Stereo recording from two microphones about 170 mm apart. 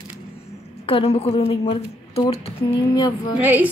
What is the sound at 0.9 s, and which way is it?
Speech, 35° left (ahead or behind).